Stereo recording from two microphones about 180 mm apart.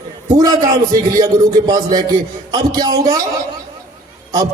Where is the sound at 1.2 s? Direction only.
20° right (ahead or behind).